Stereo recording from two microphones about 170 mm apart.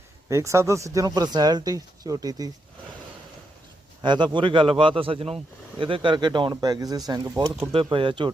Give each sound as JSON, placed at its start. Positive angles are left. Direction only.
{"t": 0.3, "sound": "speech", "side_deg": -15}
{"t": 4.0, "sound": "a man's voice", "side_deg": -25}